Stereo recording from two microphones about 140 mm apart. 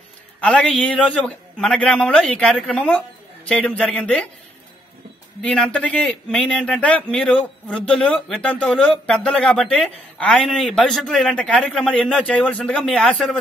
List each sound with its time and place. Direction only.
0.4 s a man's voice: 10° left (ahead or behind)
5.4 s a man's voice: 5° left (ahead or behind)